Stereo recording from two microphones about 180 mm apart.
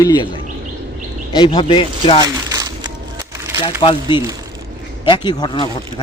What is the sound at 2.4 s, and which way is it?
Crumpling, 20° right (ahead or behind).